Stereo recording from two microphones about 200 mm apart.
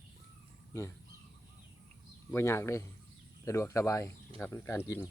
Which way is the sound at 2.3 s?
15° left (ahead or behind).